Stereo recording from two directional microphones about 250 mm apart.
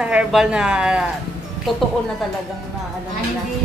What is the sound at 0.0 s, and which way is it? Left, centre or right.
A woman's voice, centre.